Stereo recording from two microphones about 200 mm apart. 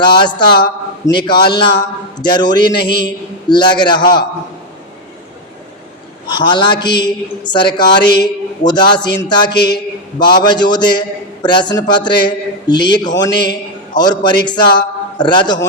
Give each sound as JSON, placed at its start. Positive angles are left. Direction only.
{"t": 0.0, "sound": "a man's voice", "side_deg": 25}
{"t": 6.2, "sound": "a man's voice", "side_deg": 20}